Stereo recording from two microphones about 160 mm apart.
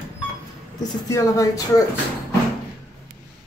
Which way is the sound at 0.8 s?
20° left (ahead or behind).